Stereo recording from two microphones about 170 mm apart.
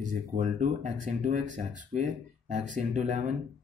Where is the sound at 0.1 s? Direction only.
50° right (ahead or behind).